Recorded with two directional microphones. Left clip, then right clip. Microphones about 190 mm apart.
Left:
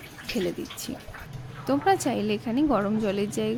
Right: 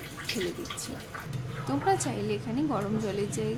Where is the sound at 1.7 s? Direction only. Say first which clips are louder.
Left 5 dB; 35° left (ahead or behind).